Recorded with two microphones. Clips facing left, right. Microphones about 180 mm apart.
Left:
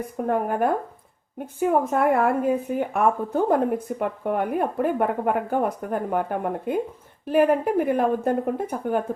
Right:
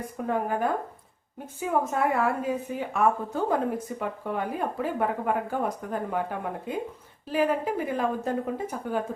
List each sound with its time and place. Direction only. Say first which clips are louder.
0.3 s a woman's voice: left 4 dB; 55° left (ahead or behind)